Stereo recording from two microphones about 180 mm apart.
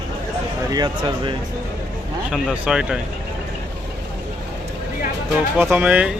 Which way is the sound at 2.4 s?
5° right (ahead or behind).